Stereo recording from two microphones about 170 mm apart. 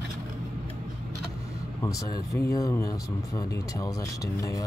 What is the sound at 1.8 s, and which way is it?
Speech, 20° left (ahead or behind).